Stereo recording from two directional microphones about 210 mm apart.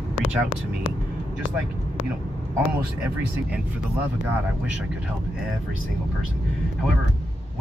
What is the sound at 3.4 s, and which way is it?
Speech, 5° right (ahead or behind).